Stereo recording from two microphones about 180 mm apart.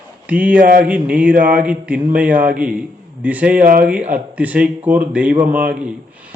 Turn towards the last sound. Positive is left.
turn(degrees=-10)  # may be behind; listen again after turning